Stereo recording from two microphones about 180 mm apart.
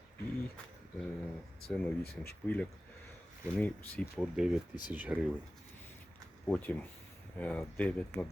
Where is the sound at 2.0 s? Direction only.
60° left (ahead or behind).